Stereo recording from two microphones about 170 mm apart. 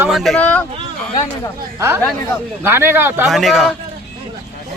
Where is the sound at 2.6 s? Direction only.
15° right (ahead or behind).